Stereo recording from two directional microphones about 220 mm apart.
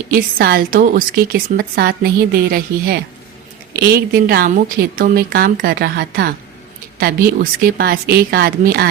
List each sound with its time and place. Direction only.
0.1 s a woman's voice: 40° right (ahead or behind)